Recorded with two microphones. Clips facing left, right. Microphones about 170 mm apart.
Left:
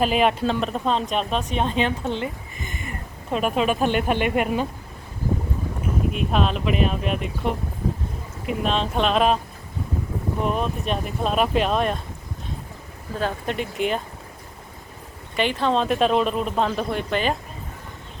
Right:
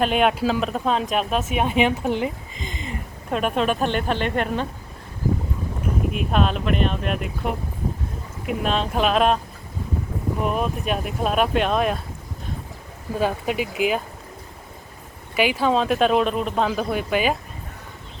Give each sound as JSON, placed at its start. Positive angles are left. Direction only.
{"t": 0.0, "sound": "speech", "side_deg": 0}
{"t": 3.3, "sound": "speech", "side_deg": 0}
{"t": 6.1, "sound": "speech", "side_deg": 0}
{"t": 10.4, "sound": "speech", "side_deg": -5}
{"t": 13.1, "sound": "speech", "side_deg": -10}
{"t": 15.4, "sound": "speech", "side_deg": -5}